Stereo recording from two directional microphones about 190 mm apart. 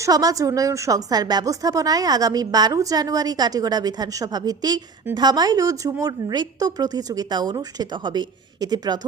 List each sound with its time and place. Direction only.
0.0 s a woman's voice: 20° right (ahead or behind)